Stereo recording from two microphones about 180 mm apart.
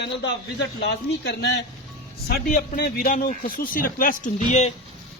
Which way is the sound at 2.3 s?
55° left (ahead or behind).